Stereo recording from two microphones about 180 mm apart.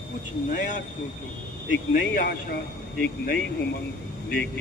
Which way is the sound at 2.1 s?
60° left (ahead or behind).